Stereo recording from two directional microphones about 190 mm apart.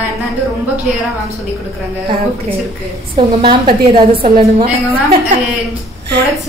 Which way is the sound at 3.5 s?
25° right (ahead or behind).